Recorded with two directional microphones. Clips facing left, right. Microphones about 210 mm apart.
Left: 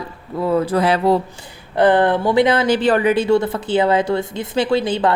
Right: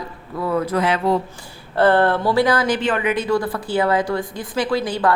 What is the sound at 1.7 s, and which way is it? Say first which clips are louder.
A woman's voice: left 2 dB; 15° left (ahead or behind).